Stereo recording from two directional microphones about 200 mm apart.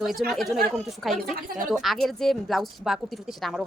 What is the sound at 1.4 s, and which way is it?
Speech, 45° right (ahead or behind).